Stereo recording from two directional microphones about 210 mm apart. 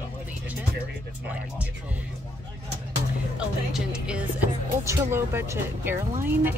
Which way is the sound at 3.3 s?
5° right (ahead or behind).